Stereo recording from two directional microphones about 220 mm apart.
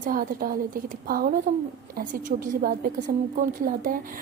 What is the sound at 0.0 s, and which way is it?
A woman's voice, 40° right (ahead or behind).